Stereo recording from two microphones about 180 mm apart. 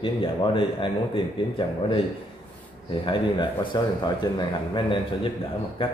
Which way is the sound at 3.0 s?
25° left (ahead or behind).